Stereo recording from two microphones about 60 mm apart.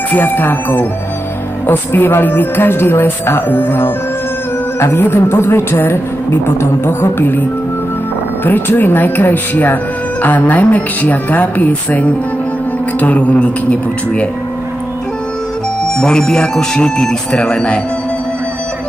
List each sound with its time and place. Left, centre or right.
0.1 s speech: left
8.5 s speech: left
15.8 s speech: centre